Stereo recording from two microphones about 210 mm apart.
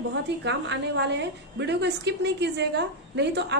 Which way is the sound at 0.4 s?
55° right (ahead or behind).